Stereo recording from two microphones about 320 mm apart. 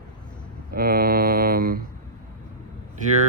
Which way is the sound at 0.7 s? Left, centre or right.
Right.